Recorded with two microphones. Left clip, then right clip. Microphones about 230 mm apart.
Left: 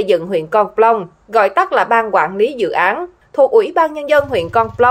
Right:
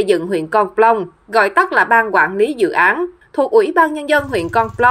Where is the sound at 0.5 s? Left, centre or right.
Right.